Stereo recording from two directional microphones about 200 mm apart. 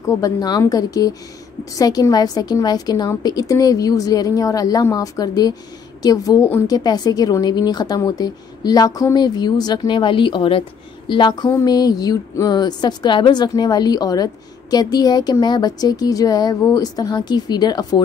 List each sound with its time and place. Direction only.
0.0 s speech: 20° left (ahead or behind)